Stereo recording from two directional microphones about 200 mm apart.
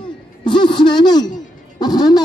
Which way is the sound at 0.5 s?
25° left (ahead or behind).